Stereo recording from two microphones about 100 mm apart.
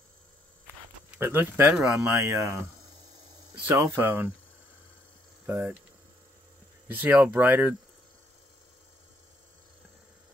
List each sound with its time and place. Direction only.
1.1 s speech: 20° right (ahead or behind)
1.8 s speech: 30° right (ahead or behind)
3.7 s speech: 25° right (ahead or behind)
6.9 s speech: 15° right (ahead or behind)